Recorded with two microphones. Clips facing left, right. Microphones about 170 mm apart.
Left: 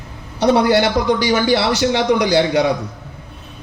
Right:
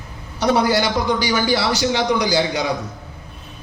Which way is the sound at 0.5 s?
60° left (ahead or behind).